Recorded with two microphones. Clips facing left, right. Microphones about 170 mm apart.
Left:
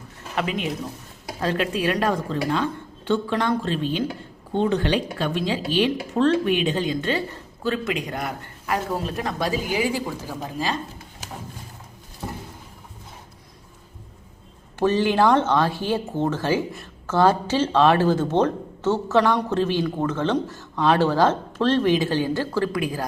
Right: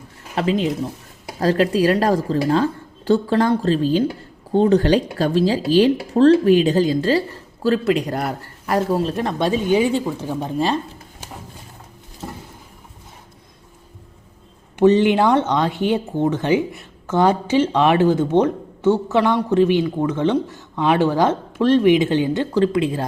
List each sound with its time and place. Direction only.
0.3 s speech: 30° right (ahead or behind)
14.8 s speech: 20° right (ahead or behind)